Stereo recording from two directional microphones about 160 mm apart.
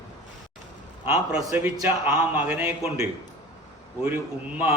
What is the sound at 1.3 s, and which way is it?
A man's voice, 10° right (ahead or behind).